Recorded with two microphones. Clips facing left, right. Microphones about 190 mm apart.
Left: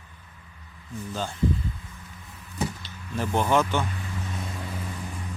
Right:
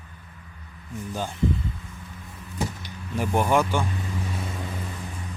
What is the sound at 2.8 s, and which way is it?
Speech, 15° right (ahead or behind).